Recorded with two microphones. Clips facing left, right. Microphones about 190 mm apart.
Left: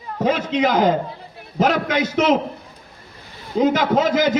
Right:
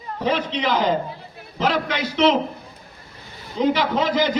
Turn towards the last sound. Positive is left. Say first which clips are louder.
# left 3 dB
turn(degrees=45)  # may be behind; listen again after turning